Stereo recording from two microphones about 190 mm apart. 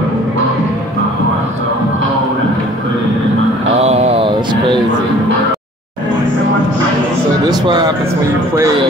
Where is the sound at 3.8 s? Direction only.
35° right (ahead or behind).